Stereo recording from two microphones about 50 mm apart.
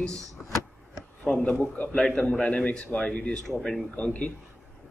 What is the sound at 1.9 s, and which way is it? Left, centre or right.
A man's voice, centre.